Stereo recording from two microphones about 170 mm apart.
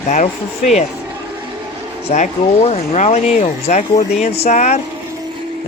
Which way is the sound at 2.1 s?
45° left (ahead or behind).